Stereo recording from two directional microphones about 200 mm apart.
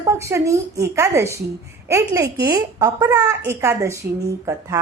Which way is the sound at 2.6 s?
15° right (ahead or behind).